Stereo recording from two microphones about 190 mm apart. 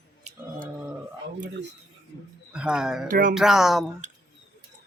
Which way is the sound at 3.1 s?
50° right (ahead or behind).